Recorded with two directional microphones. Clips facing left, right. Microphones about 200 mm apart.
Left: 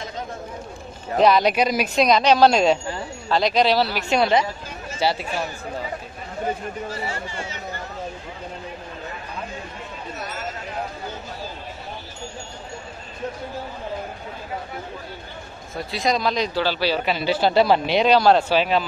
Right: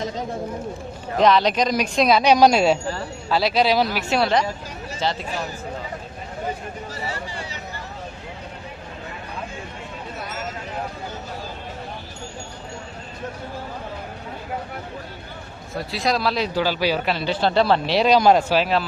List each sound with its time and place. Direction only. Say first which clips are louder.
1.2 s speech: even; 10° left (ahead or behind)
6.9 s speech: left 1 dB; 35° right (ahead or behind)
15.7 s speech: even; centre (ahead or behind)
17.0 s speech: left 1 dB; 5° left (ahead or behind)